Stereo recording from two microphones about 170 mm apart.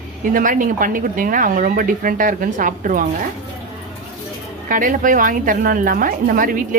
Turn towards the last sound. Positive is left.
turn(degrees=-55)  # may be behind; listen again after turning